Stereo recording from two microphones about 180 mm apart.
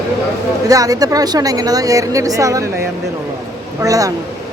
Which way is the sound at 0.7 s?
20° right (ahead or behind).